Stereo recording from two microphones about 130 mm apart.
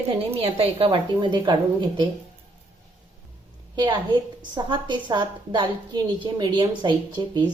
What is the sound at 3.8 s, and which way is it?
A woman's voice, 35° right (ahead or behind).